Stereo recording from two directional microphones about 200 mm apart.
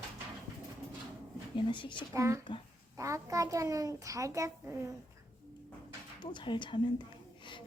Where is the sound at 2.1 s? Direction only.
15° right (ahead or behind).